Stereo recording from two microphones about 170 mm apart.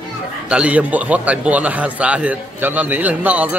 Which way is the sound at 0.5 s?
5° right (ahead or behind).